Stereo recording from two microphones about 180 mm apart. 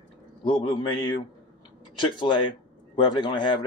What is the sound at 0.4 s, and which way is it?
Speech, 30° left (ahead or behind).